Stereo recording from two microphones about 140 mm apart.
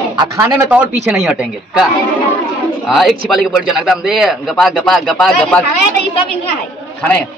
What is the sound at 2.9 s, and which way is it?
Speech, centre (ahead or behind).